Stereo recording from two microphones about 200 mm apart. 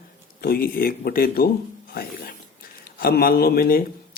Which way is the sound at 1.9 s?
45° left (ahead or behind).